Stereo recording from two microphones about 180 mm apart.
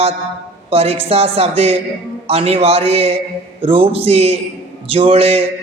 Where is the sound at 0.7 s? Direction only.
35° right (ahead or behind).